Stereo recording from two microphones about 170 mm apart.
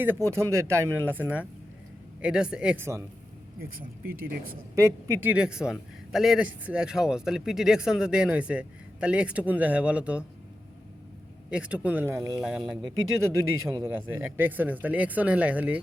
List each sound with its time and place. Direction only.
0.0 s a man's voice: 15° right (ahead or behind)
3.6 s speech: 60° right (ahead or behind)
4.7 s speech: 15° right (ahead or behind)
5.4 s a man's voice: 5° right (ahead or behind)
11.5 s speech: 5° right (ahead or behind)
12.4 s a man's voice: 5° right (ahead or behind)
13.7 s speech: 15° right (ahead or behind)